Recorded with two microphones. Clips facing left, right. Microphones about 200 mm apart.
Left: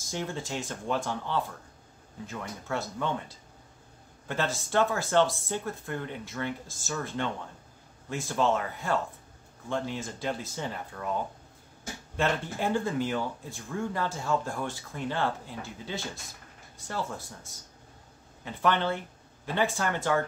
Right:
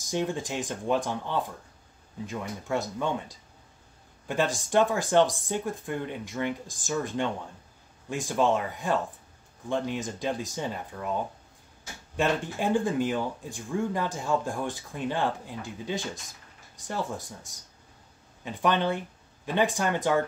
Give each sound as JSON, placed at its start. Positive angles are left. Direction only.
{"t": 0.0, "sound": "speech", "side_deg": -15}
{"t": 12.2, "sound": "speech", "side_deg": -15}